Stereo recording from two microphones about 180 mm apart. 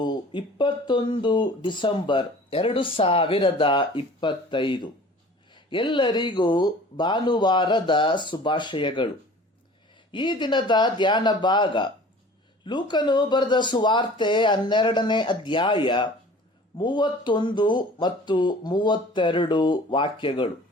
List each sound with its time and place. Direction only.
0.0 s speech: 25° left (ahead or behind)
10.1 s speech: 25° left (ahead or behind)